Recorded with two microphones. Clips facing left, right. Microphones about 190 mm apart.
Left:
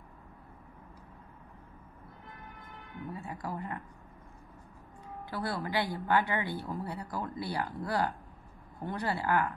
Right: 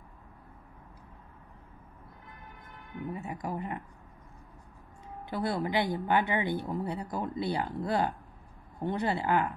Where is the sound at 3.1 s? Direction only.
20° right (ahead or behind).